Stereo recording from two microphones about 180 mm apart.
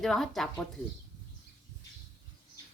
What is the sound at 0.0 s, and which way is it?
Speech, centre (ahead or behind).